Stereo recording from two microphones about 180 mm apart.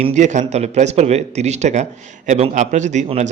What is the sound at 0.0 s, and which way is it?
Speech, 40° right (ahead or behind).